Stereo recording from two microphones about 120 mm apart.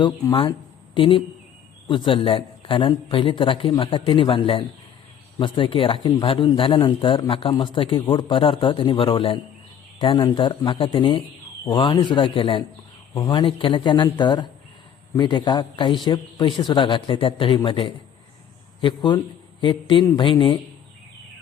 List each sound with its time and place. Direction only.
0.0 s a man's voice: 45° left (ahead or behind)
6.2 s a man's voice: 50° left (ahead or behind)